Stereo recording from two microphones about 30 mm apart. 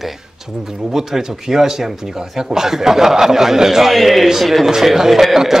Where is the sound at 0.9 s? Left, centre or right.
Centre.